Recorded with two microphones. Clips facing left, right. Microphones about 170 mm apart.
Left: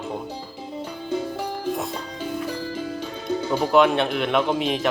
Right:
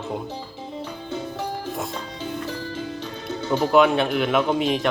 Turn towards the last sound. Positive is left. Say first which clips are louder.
# right 1 dB
turn(degrees=0)  # may be behind; listen again after turning